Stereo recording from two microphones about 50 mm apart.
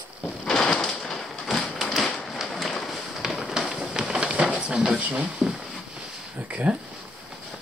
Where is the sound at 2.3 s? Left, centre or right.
Centre.